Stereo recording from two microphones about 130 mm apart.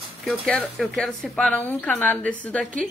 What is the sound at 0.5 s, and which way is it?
Speech, 5° left (ahead or behind).